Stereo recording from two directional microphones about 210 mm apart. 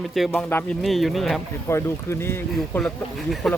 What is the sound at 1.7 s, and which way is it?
Speech, 10° left (ahead or behind).